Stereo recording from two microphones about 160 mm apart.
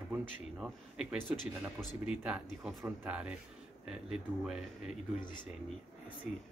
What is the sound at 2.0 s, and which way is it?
Speech, 5° right (ahead or behind).